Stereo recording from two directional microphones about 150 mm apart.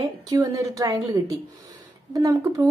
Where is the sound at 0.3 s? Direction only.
25° right (ahead or behind).